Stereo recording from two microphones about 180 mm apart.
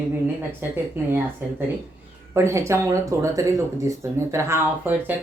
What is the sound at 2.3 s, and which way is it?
Speech, 15° right (ahead or behind).